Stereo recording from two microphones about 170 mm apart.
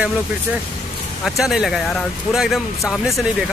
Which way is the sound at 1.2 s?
Centre (ahead or behind).